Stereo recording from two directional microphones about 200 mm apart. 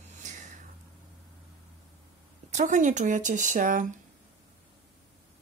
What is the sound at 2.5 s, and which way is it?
Speech, 40° right (ahead or behind).